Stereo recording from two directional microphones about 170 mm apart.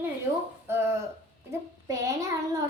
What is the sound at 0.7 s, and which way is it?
A woman's voice, 15° right (ahead or behind).